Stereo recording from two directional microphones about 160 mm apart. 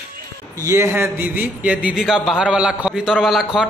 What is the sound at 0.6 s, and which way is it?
A man's voice, 20° right (ahead or behind).